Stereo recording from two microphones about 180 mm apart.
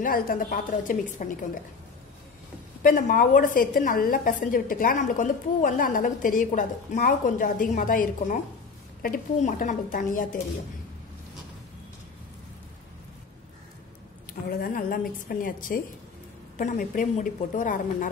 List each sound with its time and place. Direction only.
0.0 s a woman's voice: 50° left (ahead or behind)
2.8 s a woman's voice: 45° left (ahead or behind)
14.5 s a woman's voice: 55° left (ahead or behind)